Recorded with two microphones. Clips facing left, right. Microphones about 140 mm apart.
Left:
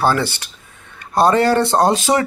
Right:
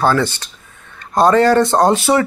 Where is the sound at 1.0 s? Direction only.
10° left (ahead or behind).